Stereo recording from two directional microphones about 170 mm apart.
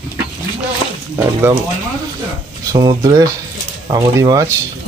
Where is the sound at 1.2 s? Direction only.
20° right (ahead or behind).